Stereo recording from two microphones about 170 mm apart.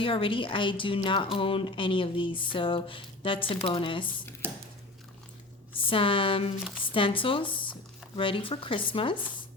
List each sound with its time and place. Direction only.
0.0 s a woman's voice: 30° left (ahead or behind)
5.7 s a woman's voice: 30° left (ahead or behind)